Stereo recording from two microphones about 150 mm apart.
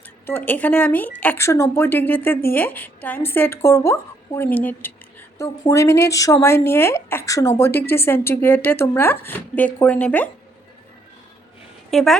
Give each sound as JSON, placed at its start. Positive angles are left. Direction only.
{"t": 0.3, "sound": "speech", "side_deg": 10}
{"t": 11.9, "sound": "speech", "side_deg": 0}